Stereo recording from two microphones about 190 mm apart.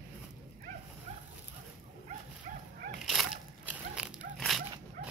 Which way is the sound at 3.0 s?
Centre (ahead or behind).